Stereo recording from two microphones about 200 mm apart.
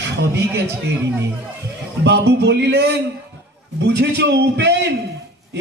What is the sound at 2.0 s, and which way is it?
Speech, 55° right (ahead or behind).